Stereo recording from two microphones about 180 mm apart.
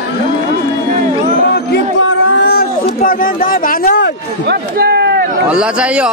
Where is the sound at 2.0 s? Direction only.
80° left; by 4.0 s 50° left (ahead or behind).